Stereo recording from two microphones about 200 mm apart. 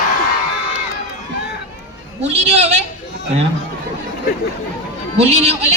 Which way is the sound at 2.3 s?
35° right (ahead or behind).